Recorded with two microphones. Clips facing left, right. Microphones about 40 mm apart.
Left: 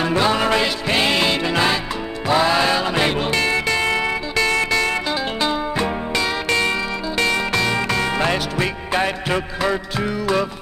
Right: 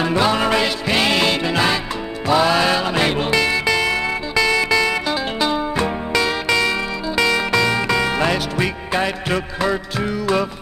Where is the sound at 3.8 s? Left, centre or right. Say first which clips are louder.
Even; left.